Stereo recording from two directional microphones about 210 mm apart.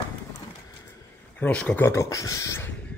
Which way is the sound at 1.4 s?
5° left (ahead or behind).